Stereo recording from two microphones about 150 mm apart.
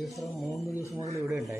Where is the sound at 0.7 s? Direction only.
20° left (ahead or behind).